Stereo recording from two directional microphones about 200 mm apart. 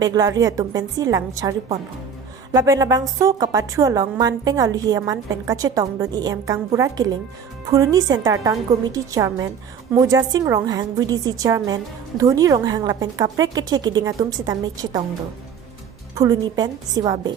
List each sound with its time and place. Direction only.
0.0 s a woman's voice: 20° right (ahead or behind)
16.1 s a woman's voice: 15° right (ahead or behind)